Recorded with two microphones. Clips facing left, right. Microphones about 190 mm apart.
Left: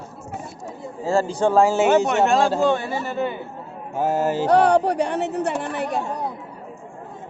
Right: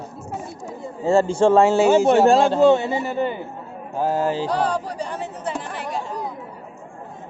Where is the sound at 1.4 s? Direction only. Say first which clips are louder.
Right 2 dB; centre (ahead or behind).